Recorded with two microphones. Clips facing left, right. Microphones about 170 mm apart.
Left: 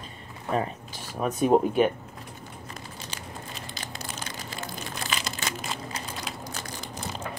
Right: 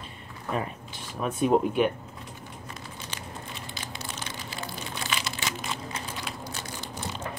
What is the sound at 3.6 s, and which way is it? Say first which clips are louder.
Crumpling: even; 40° left (ahead or behind).